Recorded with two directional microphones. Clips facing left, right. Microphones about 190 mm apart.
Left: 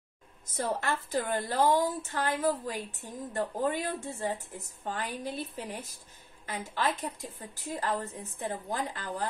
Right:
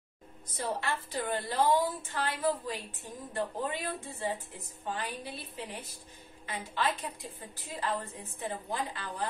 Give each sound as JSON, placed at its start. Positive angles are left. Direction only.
{"t": 0.6, "sound": "a woman's voice", "side_deg": 45}